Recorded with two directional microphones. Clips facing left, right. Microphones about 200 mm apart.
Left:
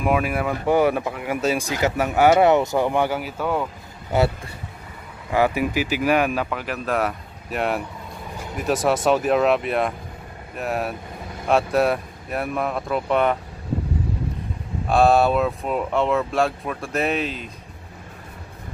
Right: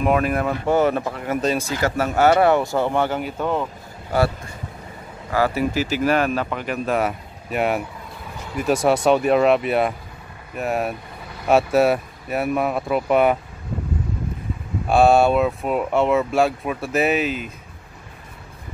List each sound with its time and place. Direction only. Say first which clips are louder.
0.0 s speech: right 2 dB; 10° left (ahead or behind)
4.1 s speech: even; 20° left (ahead or behind)
5.3 s speech: even; 15° left (ahead or behind); by 13.4 s 5° right (ahead or behind)
14.9 s speech: right 2 dB; centre (ahead or behind)